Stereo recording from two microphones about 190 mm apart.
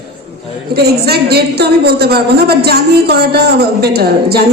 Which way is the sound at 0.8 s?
55° right (ahead or behind).